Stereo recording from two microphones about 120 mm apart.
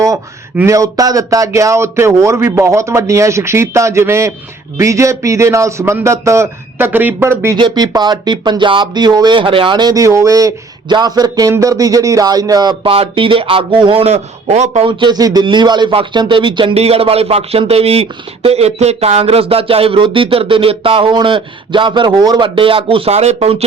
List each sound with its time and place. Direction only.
0.6 s a man's voice: 25° right (ahead or behind)
7.5 s speech: 35° right (ahead or behind)
12.8 s speech: 50° right (ahead or behind)
14.8 s speech: 35° right (ahead or behind)
16.7 s speech: 60° right (ahead or behind)